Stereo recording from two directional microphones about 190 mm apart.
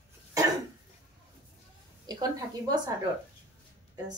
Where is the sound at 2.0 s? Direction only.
20° right (ahead or behind).